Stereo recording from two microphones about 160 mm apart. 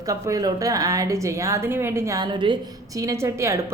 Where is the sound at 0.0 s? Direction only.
20° right (ahead or behind).